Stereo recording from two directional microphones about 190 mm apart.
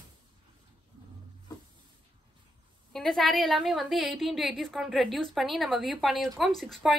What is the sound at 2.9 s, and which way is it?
A woman's voice, 5° left (ahead or behind).